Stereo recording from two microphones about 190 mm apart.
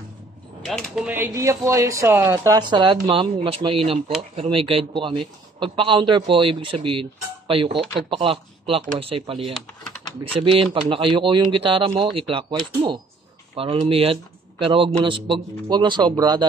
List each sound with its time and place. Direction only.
0.7 s a man's voice: centre (ahead or behind); by 16.4 s 20° right (ahead or behind)